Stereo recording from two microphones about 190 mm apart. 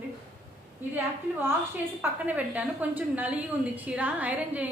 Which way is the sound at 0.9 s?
10° right (ahead or behind).